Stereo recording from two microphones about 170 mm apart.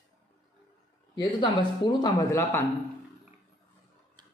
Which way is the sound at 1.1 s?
25° left (ahead or behind).